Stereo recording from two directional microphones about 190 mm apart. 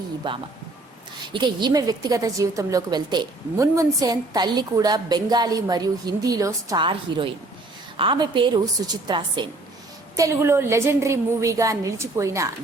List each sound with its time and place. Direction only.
0.2 s a woman's voice: 25° right (ahead or behind)